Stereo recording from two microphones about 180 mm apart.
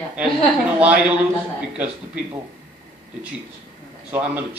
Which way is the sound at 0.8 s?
5° right (ahead or behind).